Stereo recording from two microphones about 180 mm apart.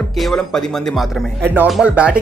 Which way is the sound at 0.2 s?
5° left (ahead or behind).